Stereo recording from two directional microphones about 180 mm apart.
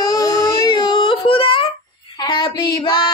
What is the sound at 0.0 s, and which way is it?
Baby cry, 20° left (ahead or behind).